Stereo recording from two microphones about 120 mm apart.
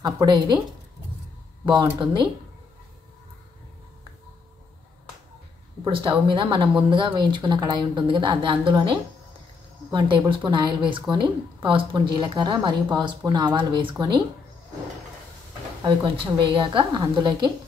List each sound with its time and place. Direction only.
0.0 s a woman's voice: 30° right (ahead or behind)
1.7 s a woman's voice: 40° right (ahead or behind)
5.9 s a woman's voice: 45° right (ahead or behind)
15.8 s a woman's voice: 40° right (ahead or behind)